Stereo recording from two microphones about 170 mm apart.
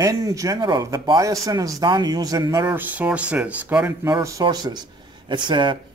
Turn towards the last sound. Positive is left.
turn(degrees=-25)  # may be behind; listen again after turning